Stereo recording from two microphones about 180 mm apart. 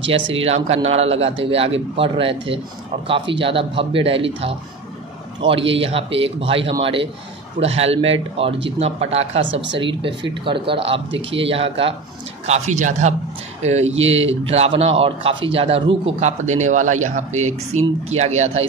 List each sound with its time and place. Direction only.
0.1 s a man's voice: 30° right (ahead or behind)
5.4 s a man's voice: 30° right (ahead or behind)
9.5 s speech: 80° right
10.4 s speech: 30° right (ahead or behind)
11.1 s speech: 90° right
11.3 s a man's voice: 30° right (ahead or behind)